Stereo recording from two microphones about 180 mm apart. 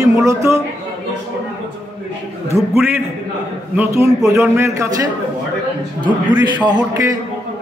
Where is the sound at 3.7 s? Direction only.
15° right (ahead or behind).